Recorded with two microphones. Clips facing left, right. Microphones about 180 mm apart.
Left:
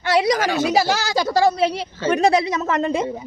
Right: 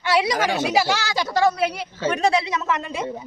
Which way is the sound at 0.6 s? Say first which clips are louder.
Left 2 dB; 40° left (ahead or behind).